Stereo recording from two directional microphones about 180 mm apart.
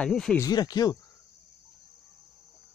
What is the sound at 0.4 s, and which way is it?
Speech, 20° left (ahead or behind).